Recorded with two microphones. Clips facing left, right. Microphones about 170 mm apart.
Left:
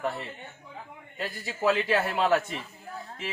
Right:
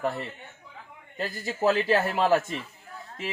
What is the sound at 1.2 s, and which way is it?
Speech, 40° right (ahead or behind).